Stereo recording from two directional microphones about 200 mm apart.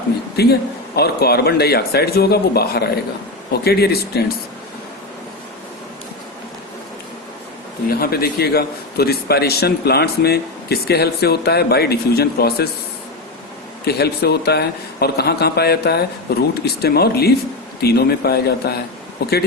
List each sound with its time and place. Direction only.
0.4 s a man's voice: 55° left (ahead or behind)
7.9 s a man's voice: 50° left (ahead or behind)
13.8 s a man's voice: 55° left (ahead or behind)